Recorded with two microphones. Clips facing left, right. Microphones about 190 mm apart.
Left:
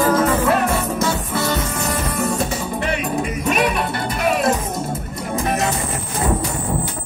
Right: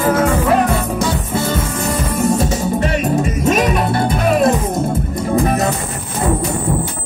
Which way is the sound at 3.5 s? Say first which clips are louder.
Right 3 dB; 45° right (ahead or behind).